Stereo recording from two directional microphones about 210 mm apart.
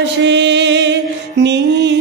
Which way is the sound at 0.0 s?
55° right (ahead or behind).